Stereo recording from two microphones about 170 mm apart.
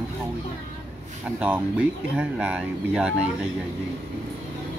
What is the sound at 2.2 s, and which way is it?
Speech, 5° right (ahead or behind).